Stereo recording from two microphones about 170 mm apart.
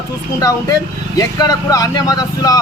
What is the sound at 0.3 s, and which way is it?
A man's voice, 20° left (ahead or behind).